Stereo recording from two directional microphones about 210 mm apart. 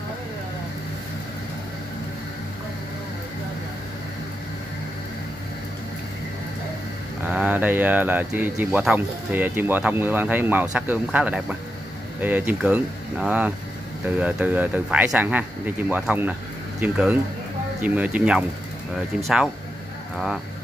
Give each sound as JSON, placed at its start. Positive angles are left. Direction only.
{"t": 7.2, "sound": "speech", "side_deg": -5}